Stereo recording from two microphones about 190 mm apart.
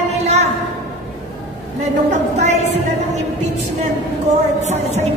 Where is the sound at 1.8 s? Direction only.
35° right (ahead or behind).